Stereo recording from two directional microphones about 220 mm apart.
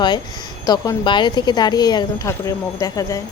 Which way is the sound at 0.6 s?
15° left (ahead or behind).